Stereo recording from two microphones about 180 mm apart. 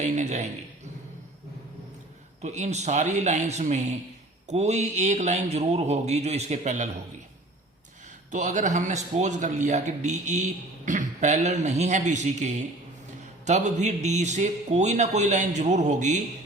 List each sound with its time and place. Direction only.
0.0 s a man's voice: 40° right (ahead or behind)
2.4 s a man's voice: 40° right (ahead or behind)
8.3 s a man's voice: 45° right (ahead or behind)